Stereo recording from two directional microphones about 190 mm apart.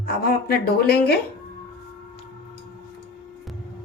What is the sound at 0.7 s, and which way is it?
Speech, 55° left (ahead or behind).